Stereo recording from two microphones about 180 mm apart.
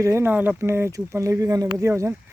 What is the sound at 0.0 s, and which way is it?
Speech, 15° right (ahead or behind).